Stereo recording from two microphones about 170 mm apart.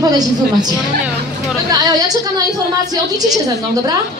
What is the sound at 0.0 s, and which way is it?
A woman's voice, 25° right (ahead or behind).